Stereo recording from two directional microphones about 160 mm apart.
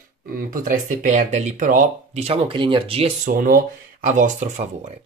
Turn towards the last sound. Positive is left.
turn(degrees=-45)  # may be behind; listen again after turning